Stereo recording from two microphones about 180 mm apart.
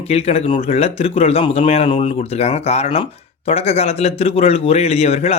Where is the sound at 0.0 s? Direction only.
35° left (ahead or behind).